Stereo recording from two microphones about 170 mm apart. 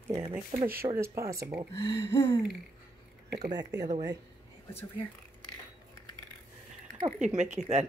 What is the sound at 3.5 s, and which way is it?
Speech, 20° right (ahead or behind).